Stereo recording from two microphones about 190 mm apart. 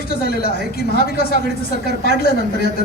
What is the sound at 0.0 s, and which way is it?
Speech, 50° left (ahead or behind).